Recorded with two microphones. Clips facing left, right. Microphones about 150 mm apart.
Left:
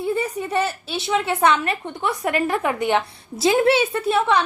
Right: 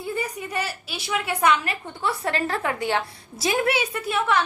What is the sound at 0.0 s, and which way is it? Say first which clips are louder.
A woman's voice: left 6 dB; 25° left (ahead or behind).